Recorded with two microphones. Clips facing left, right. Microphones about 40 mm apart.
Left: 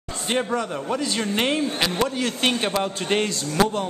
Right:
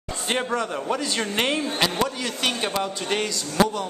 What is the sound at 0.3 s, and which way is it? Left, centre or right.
A man's voice, centre.